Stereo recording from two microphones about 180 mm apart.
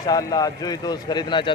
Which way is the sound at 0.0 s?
20° left (ahead or behind).